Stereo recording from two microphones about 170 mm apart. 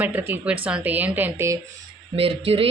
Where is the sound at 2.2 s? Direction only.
35° right (ahead or behind).